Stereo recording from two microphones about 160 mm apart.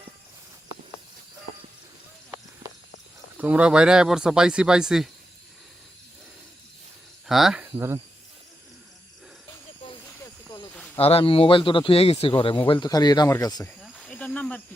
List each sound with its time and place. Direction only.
3.3 s speech: 10° right (ahead or behind)
7.3 s speech: centre (ahead or behind)
10.9 s speech: 35° left (ahead or behind)
13.8 s snake: centre (ahead or behind)